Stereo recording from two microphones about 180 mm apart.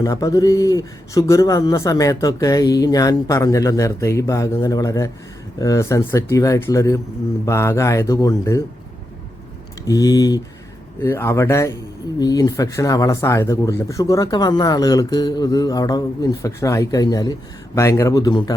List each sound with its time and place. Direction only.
0.0 s speech: 20° left (ahead or behind)
9.8 s speech: 20° left (ahead or behind)